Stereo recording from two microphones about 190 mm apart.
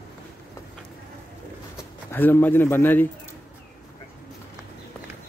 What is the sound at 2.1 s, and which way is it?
Speech, 10° left (ahead or behind).